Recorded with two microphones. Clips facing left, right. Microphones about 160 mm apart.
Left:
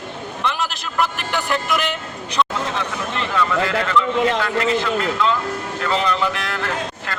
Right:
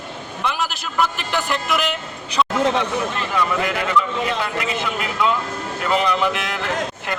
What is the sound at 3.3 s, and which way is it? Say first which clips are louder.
Speech: left 3 dB; 15° right (ahead or behind).